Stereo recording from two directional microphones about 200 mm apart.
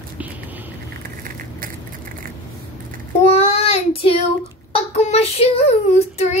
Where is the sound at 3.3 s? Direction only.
30° left (ahead or behind).